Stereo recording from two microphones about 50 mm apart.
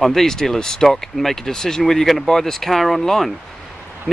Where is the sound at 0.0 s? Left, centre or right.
Centre.